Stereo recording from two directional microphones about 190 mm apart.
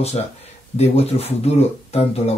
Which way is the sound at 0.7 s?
30° left (ahead or behind).